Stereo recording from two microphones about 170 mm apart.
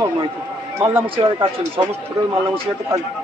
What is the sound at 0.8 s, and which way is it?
Speech, 15° right (ahead or behind).